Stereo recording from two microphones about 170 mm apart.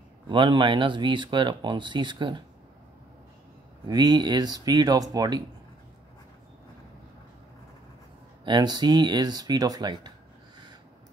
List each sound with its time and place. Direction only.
0.3 s speech: 30° right (ahead or behind)
3.8 s speech: 25° right (ahead or behind)
8.5 s speech: 25° right (ahead or behind)